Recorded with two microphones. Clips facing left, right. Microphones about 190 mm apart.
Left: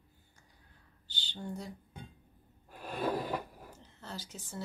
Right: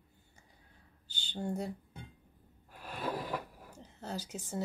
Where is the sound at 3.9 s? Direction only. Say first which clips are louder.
Right 5 dB; 40° right (ahead or behind).